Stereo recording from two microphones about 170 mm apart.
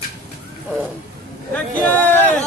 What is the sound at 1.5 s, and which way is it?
Speech, 10° left (ahead or behind).